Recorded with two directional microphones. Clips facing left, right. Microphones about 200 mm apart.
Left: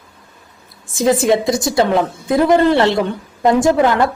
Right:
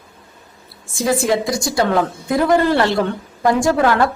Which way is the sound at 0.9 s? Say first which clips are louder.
Left 4 dB; 20° left (ahead or behind).